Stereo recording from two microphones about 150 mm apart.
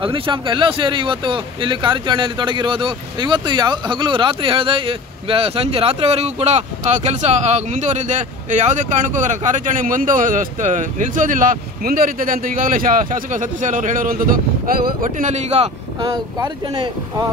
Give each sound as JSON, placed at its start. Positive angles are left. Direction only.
{"t": 0.0, "sound": "speech", "side_deg": -35}
{"t": 15.0, "sound": "speech", "side_deg": -55}
{"t": 16.0, "sound": "speech", "side_deg": -30}